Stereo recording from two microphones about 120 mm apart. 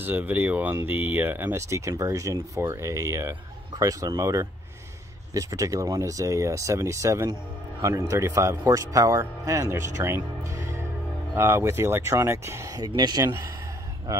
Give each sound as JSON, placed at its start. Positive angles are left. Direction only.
{"t": 0.0, "sound": "speech", "side_deg": -15}